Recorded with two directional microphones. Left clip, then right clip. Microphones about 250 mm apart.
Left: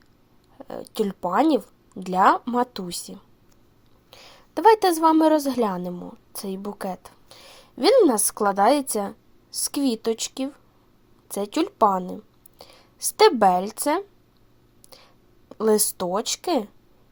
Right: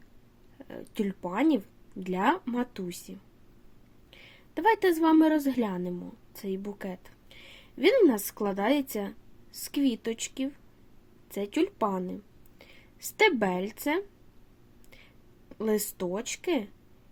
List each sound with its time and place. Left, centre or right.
0.7 s a woman's voice: centre
15.4 s speech: centre